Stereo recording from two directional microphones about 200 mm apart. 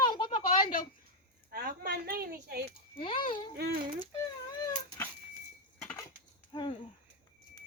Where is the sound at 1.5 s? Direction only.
50° right (ahead or behind).